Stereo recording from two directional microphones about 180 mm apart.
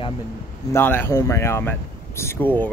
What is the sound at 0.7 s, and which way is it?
Speech, 10° left (ahead or behind).